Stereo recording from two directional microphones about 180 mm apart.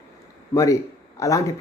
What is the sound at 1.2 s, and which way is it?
Speech, 15° left (ahead or behind).